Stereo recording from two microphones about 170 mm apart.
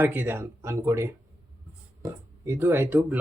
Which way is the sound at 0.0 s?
10° right (ahead or behind).